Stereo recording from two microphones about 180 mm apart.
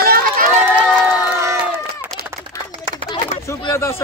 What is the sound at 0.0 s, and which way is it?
Crowd, 55° right (ahead or behind).